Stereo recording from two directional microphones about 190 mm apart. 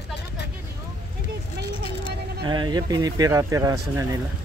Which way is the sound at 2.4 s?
25° right (ahead or behind).